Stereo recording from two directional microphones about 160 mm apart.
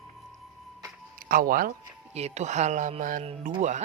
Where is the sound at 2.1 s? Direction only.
45° right (ahead or behind).